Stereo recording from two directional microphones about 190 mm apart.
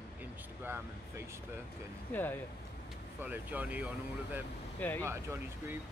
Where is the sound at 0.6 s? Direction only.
10° right (ahead or behind).